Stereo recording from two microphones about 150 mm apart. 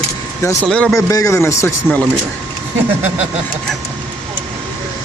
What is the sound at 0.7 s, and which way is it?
Speech, 5° left (ahead or behind).